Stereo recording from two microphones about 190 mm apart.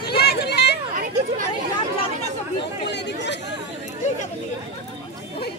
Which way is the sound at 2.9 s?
65° left (ahead or behind).